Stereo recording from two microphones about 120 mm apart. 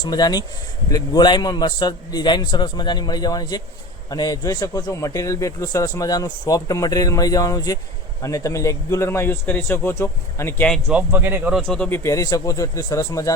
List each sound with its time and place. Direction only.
0.1 s a man's voice: 35° left (ahead or behind)
10.9 s speech: 15° right (ahead or behind)
11.6 s a man's voice: 10° left (ahead or behind)
11.9 s a man's voice: 25° left (ahead or behind)